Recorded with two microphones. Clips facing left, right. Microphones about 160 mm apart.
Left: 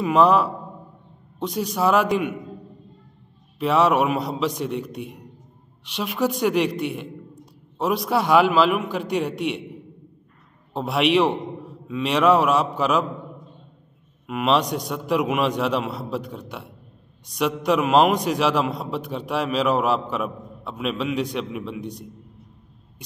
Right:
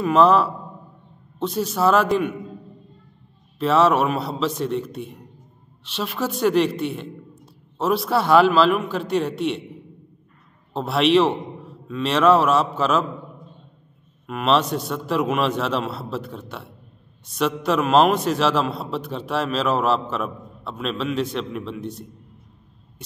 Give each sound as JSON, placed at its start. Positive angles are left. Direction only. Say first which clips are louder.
{"t": 0.0, "sound": "a man's voice", "louder": "right 1 dB", "side_deg": 15}
{"t": 3.5, "sound": "a man's voice", "louder": "right 1 dB", "side_deg": 15}
{"t": 10.7, "sound": "a man's voice", "louder": "right 2 dB", "side_deg": 15}
{"t": 14.2, "sound": "a man's voice", "louder": "right 1 dB", "side_deg": 15}